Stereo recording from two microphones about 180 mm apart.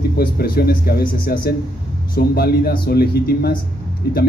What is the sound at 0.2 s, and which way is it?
Speech, 60° left (ahead or behind).